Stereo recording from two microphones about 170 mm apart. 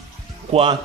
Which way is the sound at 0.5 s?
35° right (ahead or behind).